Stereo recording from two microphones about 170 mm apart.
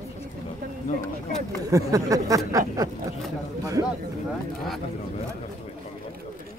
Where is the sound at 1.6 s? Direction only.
20° right (ahead or behind).